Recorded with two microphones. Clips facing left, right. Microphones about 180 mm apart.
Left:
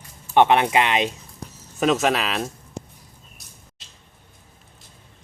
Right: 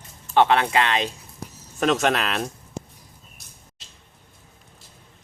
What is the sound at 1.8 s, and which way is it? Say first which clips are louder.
Speech: left 1 dB; centre (ahead or behind).